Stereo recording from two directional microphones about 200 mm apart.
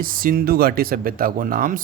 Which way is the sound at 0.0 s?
45° right (ahead or behind).